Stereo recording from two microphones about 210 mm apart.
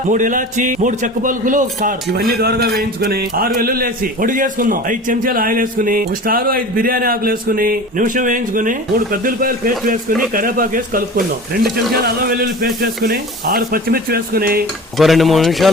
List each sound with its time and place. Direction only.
0.1 s a man's voice: 40° right (ahead or behind)
12.0 s speech: 45° right (ahead or behind)
14.9 s speech: centre (ahead or behind)